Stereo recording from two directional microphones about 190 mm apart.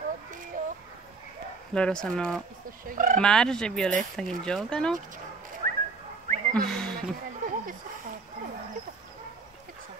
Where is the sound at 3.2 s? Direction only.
5° left (ahead or behind).